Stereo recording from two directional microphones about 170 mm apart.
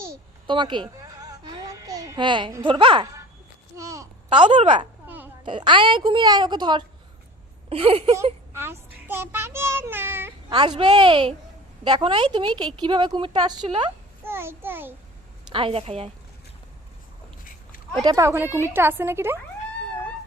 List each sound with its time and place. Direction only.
0.4 s babbling: 30° right (ahead or behind)
2.6 s a woman's voice: 30° right (ahead or behind)
3.8 s a sound: 20° right (ahead or behind)
5.0 s babbling: 10° right (ahead or behind)
5.4 s a woman's voice: 30° right (ahead or behind)
8.5 s speech: 15° right (ahead or behind)
10.5 s a woman's voice: 25° right (ahead or behind)
14.3 s a child's voice: 15° right (ahead or behind)
15.5 s speech: 35° right (ahead or behind)
18.0 s a woman's voice: 20° right (ahead or behind)